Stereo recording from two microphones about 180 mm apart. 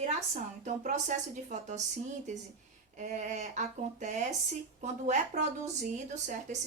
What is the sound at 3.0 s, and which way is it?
Speech, 40° right (ahead or behind).